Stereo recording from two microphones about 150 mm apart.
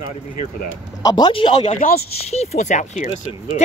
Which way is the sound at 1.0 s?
30° left (ahead or behind).